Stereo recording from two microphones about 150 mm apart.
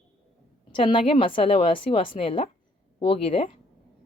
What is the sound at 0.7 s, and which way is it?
Speech, 35° left (ahead or behind).